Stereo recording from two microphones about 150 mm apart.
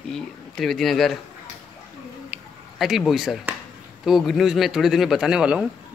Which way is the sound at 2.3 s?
Centre (ahead or behind).